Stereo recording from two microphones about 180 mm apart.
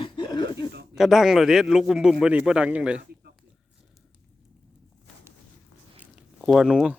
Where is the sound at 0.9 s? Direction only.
Centre (ahead or behind).